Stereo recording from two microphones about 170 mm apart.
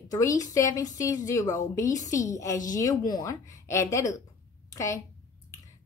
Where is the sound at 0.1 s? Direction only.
20° left (ahead or behind).